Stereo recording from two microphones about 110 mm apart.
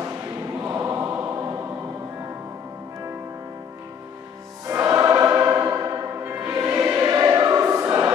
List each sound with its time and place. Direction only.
0.6 s choir: 25° right (ahead or behind)
4.6 s choir: 25° right (ahead or behind)